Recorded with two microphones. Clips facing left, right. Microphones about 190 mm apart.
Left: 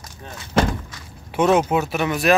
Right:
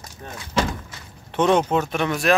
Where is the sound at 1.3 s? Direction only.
5° left (ahead or behind).